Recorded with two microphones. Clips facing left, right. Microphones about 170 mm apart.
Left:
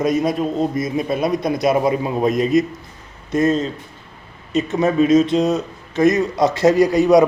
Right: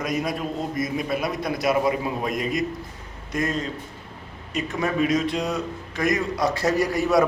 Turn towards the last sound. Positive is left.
turn(degrees=20)  # may be behind; listen again after turning